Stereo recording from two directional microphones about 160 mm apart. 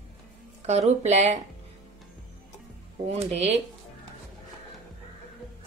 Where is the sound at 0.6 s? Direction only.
45° right (ahead or behind).